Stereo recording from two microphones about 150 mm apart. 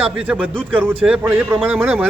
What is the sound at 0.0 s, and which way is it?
Speech, 10° right (ahead or behind).